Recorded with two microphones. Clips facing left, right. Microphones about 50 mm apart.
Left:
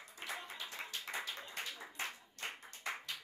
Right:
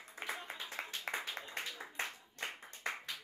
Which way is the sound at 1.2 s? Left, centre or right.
Right.